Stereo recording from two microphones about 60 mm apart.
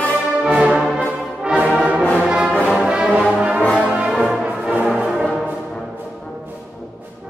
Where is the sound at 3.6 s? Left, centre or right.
Left.